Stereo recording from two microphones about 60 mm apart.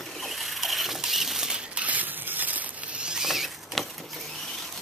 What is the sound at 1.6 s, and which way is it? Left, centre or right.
Zipper, centre.